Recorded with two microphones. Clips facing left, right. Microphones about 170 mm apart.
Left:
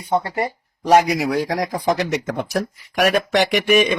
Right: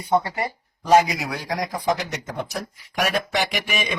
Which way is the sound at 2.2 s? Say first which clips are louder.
Left 7 dB; 80° left.